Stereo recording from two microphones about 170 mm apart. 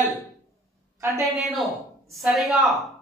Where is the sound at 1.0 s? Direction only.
15° right (ahead or behind).